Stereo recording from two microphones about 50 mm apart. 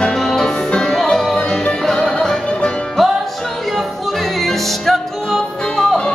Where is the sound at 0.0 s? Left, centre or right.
Centre.